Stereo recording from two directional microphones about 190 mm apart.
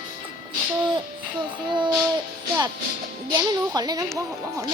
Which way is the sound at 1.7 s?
25° right (ahead or behind).